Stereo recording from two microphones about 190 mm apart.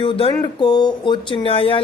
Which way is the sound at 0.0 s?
30° left (ahead or behind).